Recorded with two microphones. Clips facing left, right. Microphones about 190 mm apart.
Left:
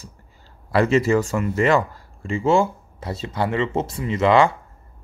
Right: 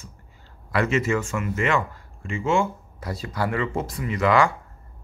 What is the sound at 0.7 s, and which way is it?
A man's voice, 35° left (ahead or behind).